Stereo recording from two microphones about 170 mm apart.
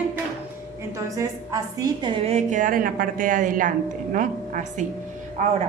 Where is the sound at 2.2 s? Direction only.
40° right (ahead or behind).